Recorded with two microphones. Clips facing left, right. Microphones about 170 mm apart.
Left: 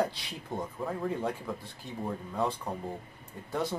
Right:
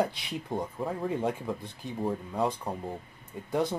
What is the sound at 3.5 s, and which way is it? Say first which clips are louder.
Speech: right 4 dB; 15° right (ahead or behind).